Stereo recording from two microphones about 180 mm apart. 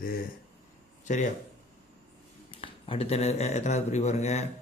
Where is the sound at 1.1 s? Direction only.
45° left (ahead or behind).